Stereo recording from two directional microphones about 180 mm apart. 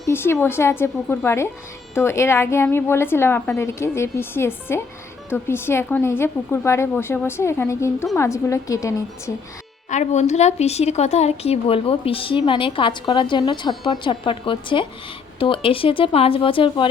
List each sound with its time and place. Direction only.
0.0 s a woman's voice: 15° left (ahead or behind)
9.9 s speech: 40° left (ahead or behind)